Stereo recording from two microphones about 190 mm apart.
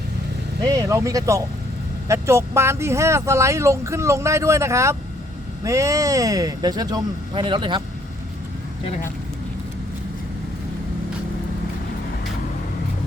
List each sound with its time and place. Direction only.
0.6 s speech: 15° right (ahead or behind)